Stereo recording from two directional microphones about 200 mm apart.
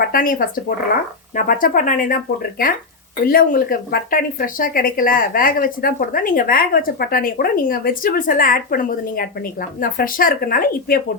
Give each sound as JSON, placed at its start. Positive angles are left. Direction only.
{"t": 0.0, "sound": "a woman's voice", "side_deg": 45}
{"t": 3.2, "sound": "a woman's voice", "side_deg": 45}